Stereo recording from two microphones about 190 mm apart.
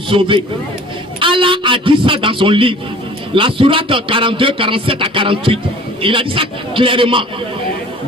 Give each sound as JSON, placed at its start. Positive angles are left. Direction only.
{"t": 0.1, "sound": "a man's voice", "side_deg": -25}